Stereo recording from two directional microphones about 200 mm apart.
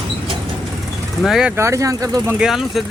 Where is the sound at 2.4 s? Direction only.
Centre (ahead or behind).